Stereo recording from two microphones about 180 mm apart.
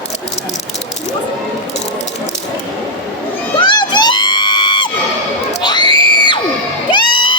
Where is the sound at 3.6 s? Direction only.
25° left (ahead or behind).